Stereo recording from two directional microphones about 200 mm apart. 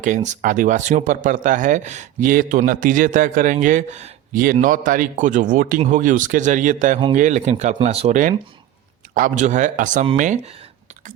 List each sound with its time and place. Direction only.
0.0 s speech: 40° right (ahead or behind)